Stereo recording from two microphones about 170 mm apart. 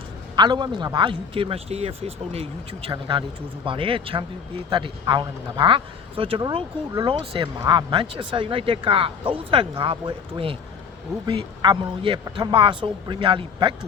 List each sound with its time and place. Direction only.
0.3 s a man's voice: 25° right (ahead or behind)